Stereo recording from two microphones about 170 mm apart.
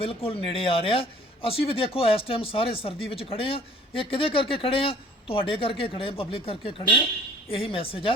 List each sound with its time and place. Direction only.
0.0 s speech: 35° left (ahead or behind)